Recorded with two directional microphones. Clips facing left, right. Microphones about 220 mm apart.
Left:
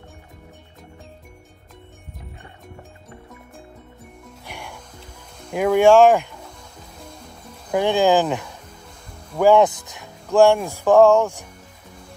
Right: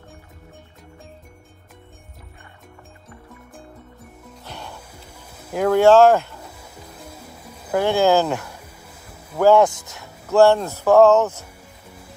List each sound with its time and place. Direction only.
4.5 s music: 10° left (ahead or behind)
4.7 s music: 10° right (ahead or behind)
5.5 s speech: 15° left (ahead or behind)
7.0 s music: 5° right (ahead or behind)
7.7 s speech: 15° left (ahead or behind)